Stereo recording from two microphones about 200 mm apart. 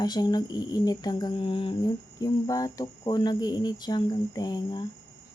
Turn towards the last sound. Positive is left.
turn(degrees=20)  # may be behind; listen again after turning